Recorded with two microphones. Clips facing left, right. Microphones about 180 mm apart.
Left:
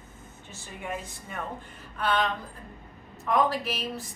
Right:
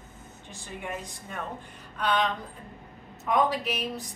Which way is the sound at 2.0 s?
5° left (ahead or behind).